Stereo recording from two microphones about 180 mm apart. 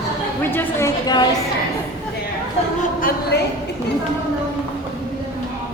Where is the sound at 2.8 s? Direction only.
50° left (ahead or behind).